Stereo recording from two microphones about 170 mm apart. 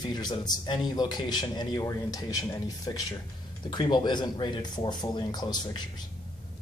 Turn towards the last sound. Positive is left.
turn(degrees=25)  # may be behind; listen again after turning